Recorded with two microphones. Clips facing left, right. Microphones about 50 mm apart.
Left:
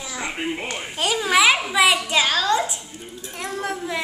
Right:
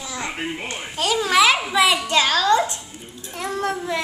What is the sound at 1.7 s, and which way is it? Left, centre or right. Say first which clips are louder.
A woman's voice: even; centre.